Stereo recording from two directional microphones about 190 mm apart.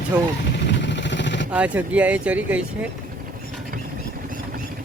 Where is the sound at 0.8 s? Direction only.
70° left (ahead or behind).